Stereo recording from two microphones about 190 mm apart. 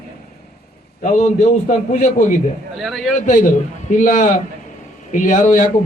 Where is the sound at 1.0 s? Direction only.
40° left (ahead or behind).